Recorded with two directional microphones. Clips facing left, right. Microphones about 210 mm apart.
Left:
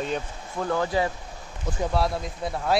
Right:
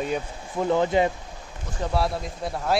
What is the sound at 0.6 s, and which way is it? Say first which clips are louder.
Speech: right 4 dB; 20° right (ahead or behind).